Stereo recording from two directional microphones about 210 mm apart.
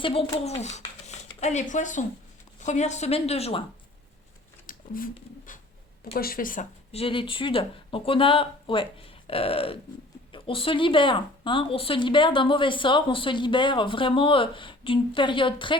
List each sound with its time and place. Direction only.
0.0 s a woman's voice: 25° left (ahead or behind)
4.6 s a sound: 40° left (ahead or behind)
6.1 s a woman's voice: 45° left (ahead or behind); by 15.8 s 25° left (ahead or behind)